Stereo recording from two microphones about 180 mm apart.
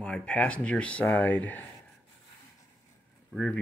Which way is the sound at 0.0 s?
5° left (ahead or behind).